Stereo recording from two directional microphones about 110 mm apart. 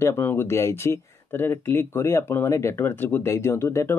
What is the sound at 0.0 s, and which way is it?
Speech, 20° left (ahead or behind).